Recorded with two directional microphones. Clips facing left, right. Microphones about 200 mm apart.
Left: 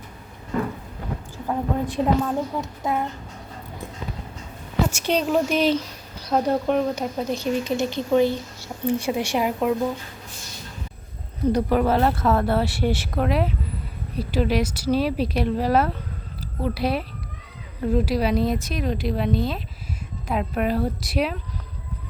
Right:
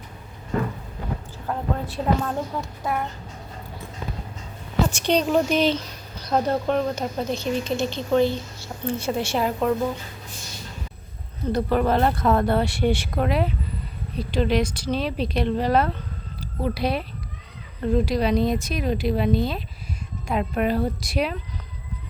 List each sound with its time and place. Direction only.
1.5 s speech: 15° left (ahead or behind)
4.9 s speech: 5° left (ahead or behind)
11.5 s speech: 10° left (ahead or behind)